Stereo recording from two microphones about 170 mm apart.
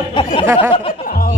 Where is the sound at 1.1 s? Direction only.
55° left (ahead or behind).